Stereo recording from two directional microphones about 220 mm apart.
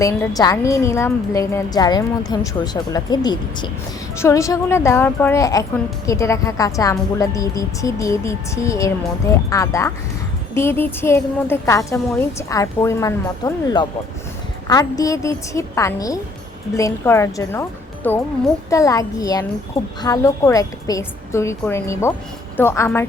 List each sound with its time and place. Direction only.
0.0 s a woman's voice: 15° left (ahead or behind)